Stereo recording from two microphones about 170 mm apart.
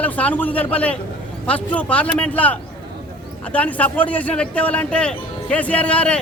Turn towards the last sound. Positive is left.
turn(degrees=5)  # may be behind; listen again after turning